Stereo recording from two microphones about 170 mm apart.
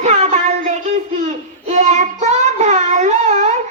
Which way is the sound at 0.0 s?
40° right (ahead or behind).